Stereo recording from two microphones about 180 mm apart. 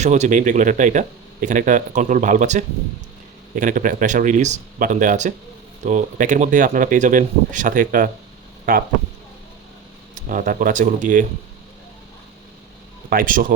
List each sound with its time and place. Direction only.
0.0 s speech: 40° right (ahead or behind)
10.2 s speech: 45° right (ahead or behind)
13.1 s speech: 50° right (ahead or behind)